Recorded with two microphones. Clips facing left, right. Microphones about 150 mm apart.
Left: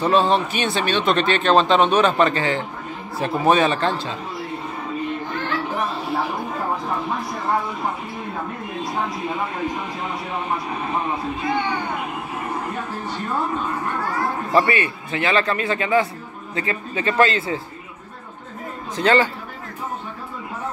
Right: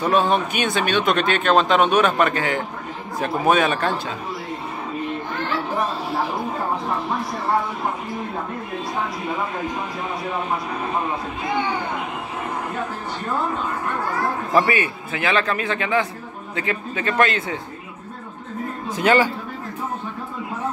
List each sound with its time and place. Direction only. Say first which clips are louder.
0.0 s a man's voice: left 1 dB; 10° right (ahead or behind)
0.5 s speech: even; 50° right (ahead or behind)
1.0 s a man's voice: left 1 dB; 5° right (ahead or behind)
14.5 s a man's voice: left 1 dB; 5° right (ahead or behind)
18.9 s a man's voice: even; 15° right (ahead or behind)